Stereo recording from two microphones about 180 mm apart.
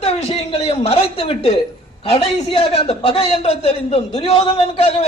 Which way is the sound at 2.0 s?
30° left (ahead or behind).